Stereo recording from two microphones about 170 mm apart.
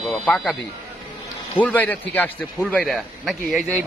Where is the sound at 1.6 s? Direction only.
10° left (ahead or behind).